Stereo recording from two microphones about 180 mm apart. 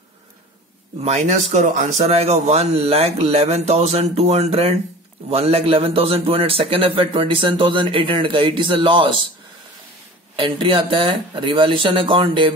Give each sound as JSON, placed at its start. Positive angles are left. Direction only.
{"t": 1.0, "sound": "a man's voice", "side_deg": -40}
{"t": 10.3, "sound": "a man's voice", "side_deg": -30}